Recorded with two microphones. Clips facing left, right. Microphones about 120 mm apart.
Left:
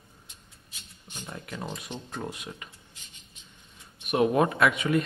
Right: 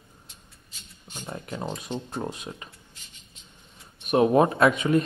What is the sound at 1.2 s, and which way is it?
Speech, 30° right (ahead or behind).